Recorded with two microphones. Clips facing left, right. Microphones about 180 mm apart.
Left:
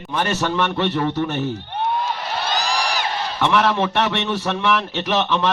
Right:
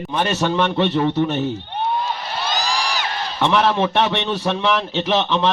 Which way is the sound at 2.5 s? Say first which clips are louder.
Even; 60° left (ahead or behind).